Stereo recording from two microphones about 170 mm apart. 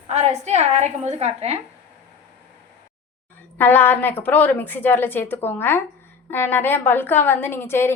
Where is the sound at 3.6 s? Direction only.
10° left (ahead or behind).